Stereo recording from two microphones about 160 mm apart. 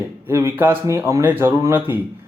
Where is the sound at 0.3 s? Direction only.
15° right (ahead or behind).